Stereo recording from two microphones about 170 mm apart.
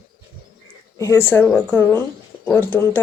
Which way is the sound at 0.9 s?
15° left (ahead or behind).